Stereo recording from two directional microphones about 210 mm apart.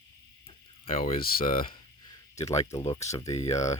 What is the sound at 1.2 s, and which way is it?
Speech, 45° left (ahead or behind).